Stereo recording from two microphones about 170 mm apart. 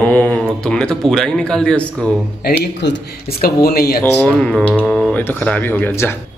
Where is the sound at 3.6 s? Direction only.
65° left (ahead or behind).